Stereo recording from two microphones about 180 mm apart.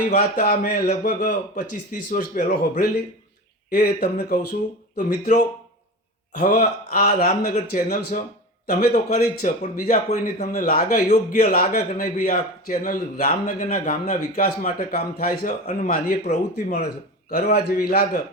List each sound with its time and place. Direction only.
0.1 s a man's voice: 60° left (ahead or behind)
7.5 s a man's voice: 45° left (ahead or behind)
10.2 s a man's voice: 45° left (ahead or behind)
17.3 s speech: 55° left (ahead or behind)